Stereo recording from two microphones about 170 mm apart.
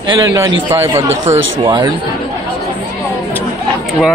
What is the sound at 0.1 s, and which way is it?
Speech, 25° right (ahead or behind).